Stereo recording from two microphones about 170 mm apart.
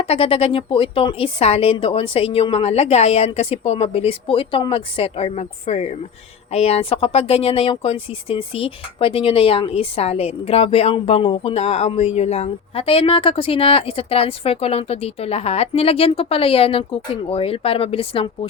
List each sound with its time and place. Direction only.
0.0 s speech: 35° left (ahead or behind)